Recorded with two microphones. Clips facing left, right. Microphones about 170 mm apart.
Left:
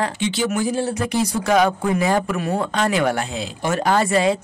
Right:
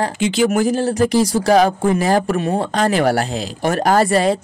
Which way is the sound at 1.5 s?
35° right (ahead or behind).